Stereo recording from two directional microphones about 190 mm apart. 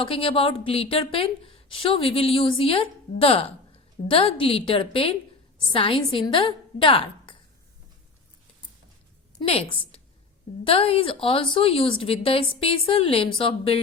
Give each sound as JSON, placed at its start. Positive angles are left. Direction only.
{"t": 0.0, "sound": "a woman's voice", "side_deg": 30}
{"t": 9.4, "sound": "a woman's voice", "side_deg": 30}